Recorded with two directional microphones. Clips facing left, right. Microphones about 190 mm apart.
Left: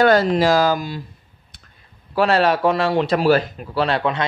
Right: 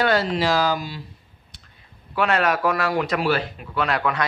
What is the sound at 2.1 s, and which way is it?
Speech, 35° left (ahead or behind).